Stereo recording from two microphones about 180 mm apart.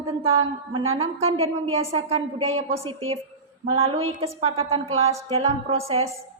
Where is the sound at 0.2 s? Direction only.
30° right (ahead or behind).